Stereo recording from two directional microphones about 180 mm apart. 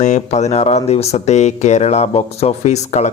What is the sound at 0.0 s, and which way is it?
Speech, 40° left (ahead or behind).